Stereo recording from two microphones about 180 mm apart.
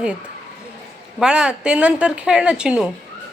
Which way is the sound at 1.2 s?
5° right (ahead or behind).